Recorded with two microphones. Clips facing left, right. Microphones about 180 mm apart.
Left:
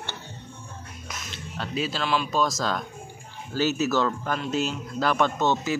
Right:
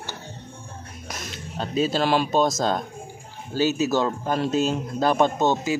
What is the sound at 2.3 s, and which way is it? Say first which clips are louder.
A man's voice: right 4 dB; 25° right (ahead or behind).